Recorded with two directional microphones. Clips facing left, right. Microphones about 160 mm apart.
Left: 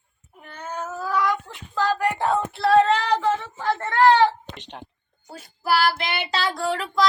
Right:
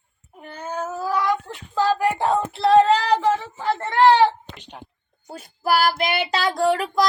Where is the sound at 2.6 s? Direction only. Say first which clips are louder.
Right 2 dB; 20° right (ahead or behind).